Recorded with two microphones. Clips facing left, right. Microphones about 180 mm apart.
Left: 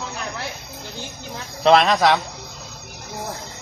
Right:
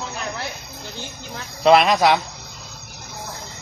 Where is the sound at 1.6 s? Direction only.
5° right (ahead or behind).